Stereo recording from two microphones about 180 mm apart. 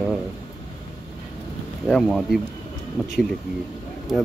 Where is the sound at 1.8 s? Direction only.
Centre (ahead or behind).